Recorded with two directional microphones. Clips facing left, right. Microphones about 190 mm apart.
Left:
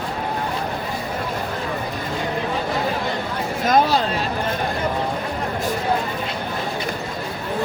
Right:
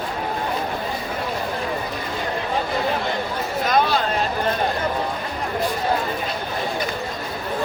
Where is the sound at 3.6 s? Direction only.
45° left (ahead or behind).